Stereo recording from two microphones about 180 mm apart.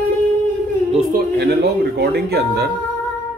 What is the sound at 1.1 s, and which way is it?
A man's voice, 60° right (ahead or behind).